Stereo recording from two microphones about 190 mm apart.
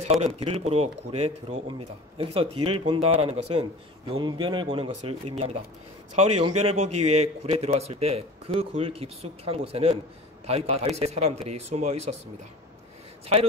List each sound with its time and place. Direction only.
0.4 s a man's voice: 30° right (ahead or behind)